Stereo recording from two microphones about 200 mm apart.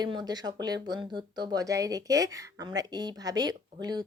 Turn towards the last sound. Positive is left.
turn(degrees=-20)  # may be behind; listen again after turning